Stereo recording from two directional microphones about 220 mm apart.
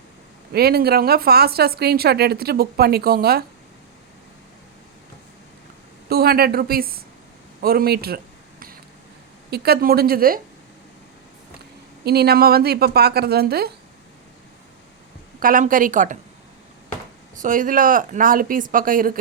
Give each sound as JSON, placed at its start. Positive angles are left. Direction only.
{"t": 0.5, "sound": "speech", "side_deg": -45}
{"t": 6.1, "sound": "speech", "side_deg": -45}
{"t": 7.6, "sound": "a sound", "side_deg": -45}
{"t": 9.5, "sound": "speech", "side_deg": -45}
{"t": 12.0, "sound": "speech", "side_deg": -45}
{"t": 15.4, "sound": "speech", "side_deg": -40}
{"t": 17.4, "sound": "speech", "side_deg": -35}